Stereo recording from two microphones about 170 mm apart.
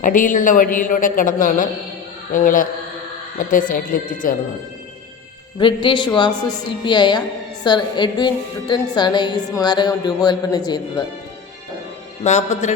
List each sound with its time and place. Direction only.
0.0 s a woman's voice: 50° left (ahead or behind)
5.5 s a woman's voice: 30° left (ahead or behind)
12.2 s a woman's voice: 45° left (ahead or behind)